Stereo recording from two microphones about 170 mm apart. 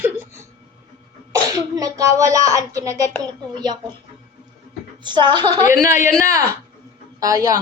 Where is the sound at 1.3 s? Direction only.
20° right (ahead or behind).